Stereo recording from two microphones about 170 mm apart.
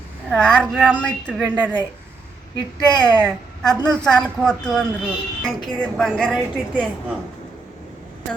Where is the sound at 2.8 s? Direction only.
25° left (ahead or behind).